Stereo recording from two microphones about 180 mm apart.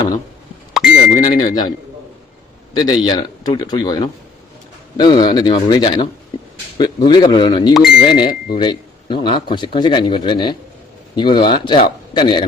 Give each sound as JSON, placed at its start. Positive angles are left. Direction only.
{"t": 0.7, "sound": "doorbell", "side_deg": -5}
{"t": 1.3, "sound": "speech", "side_deg": 20}
{"t": 2.7, "sound": "speech", "side_deg": 25}